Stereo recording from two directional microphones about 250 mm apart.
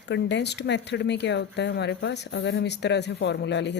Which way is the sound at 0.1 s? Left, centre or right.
Left.